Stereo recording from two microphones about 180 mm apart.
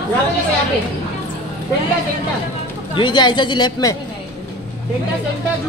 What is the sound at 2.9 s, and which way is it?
A woman's voice, 25° left (ahead or behind).